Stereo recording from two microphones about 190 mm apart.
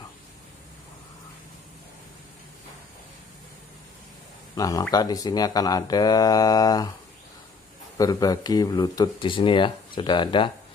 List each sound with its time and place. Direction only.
4.6 s speech: 20° left (ahead or behind)
8.0 s speech: 20° left (ahead or behind)